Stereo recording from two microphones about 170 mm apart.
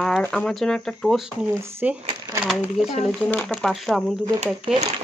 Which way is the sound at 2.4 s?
5° right (ahead or behind).